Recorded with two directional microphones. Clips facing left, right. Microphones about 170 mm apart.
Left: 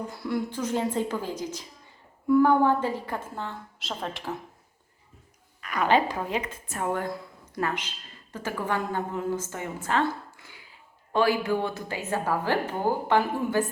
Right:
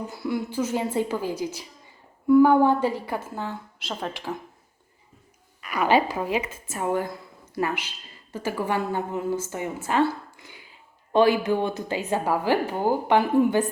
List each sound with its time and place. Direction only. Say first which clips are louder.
0.1 s a woman's voice: right 1 dB; 5° right (ahead or behind)
5.6 s a woman's voice: right 2 dB; 10° right (ahead or behind)